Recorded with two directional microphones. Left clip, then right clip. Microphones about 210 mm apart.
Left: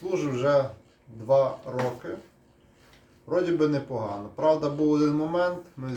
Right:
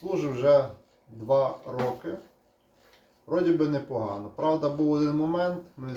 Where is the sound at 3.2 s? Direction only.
25° left (ahead or behind).